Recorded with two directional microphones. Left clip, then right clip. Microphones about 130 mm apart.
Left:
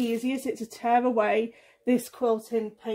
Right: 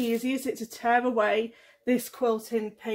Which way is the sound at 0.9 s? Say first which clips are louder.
Left 1 dB; 35° left (ahead or behind).